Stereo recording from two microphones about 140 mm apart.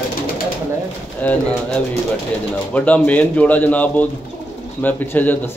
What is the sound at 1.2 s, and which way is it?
Speech, 10° left (ahead or behind).